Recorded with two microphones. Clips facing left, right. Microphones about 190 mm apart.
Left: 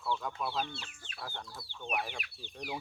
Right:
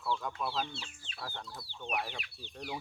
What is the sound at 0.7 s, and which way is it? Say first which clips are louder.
Speech: even; 55° left (ahead or behind).